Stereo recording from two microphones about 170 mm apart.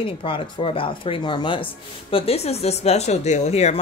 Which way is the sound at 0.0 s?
30° left (ahead or behind).